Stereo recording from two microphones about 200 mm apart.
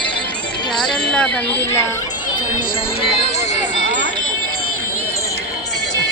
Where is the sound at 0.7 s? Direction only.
5° left (ahead or behind).